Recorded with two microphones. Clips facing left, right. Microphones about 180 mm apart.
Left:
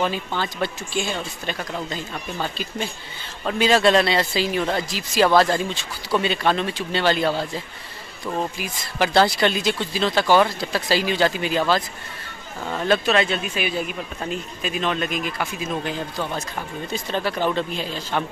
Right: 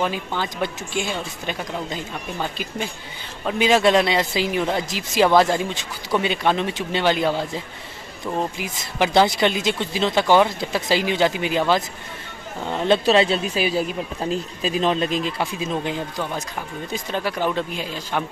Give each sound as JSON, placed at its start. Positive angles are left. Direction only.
{"t": 0.0, "sound": "speech", "side_deg": -10}
{"t": 16.2, "sound": "speech", "side_deg": -10}